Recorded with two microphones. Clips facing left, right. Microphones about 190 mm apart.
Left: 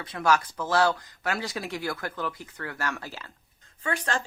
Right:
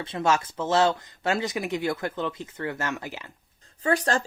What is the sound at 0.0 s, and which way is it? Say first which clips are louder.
Speech: even; 25° right (ahead or behind).